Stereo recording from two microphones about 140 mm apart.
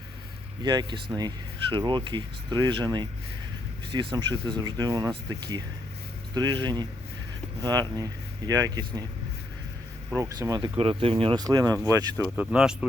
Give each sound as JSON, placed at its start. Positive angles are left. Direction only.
{"t": 0.6, "sound": "speech", "side_deg": -30}
{"t": 10.2, "sound": "speech", "side_deg": -20}
{"t": 10.8, "sound": "speech", "side_deg": -45}
{"t": 11.4, "sound": "speech", "side_deg": -25}
{"t": 12.4, "sound": "speech", "side_deg": -5}